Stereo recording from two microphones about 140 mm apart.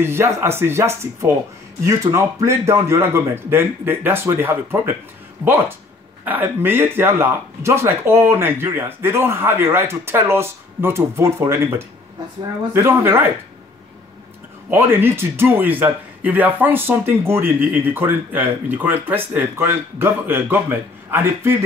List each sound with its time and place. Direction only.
0.0 s a man's voice: 20° right (ahead or behind)
14.7 s a man's voice: 15° right (ahead or behind)